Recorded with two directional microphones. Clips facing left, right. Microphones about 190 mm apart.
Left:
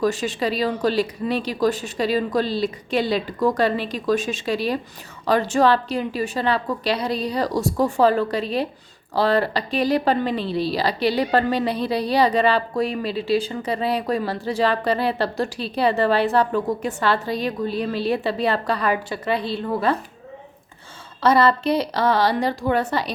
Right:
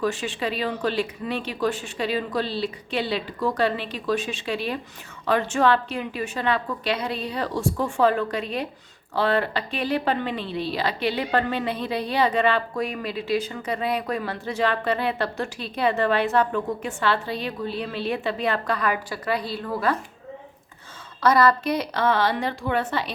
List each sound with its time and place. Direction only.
0.0 s a woman's voice: 40° left (ahead or behind)
21.2 s a woman's voice: 25° left (ahead or behind)